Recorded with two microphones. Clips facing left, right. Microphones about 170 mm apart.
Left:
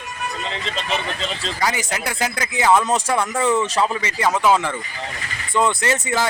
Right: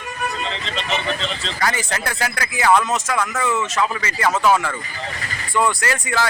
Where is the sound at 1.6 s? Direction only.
15° left (ahead or behind); by 3.8 s 30° left (ahead or behind).